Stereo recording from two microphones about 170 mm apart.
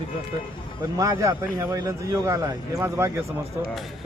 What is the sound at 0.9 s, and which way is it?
A man's voice, 20° right (ahead or behind).